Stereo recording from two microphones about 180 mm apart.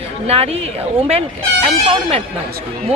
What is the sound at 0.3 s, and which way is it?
Speech, 35° right (ahead or behind).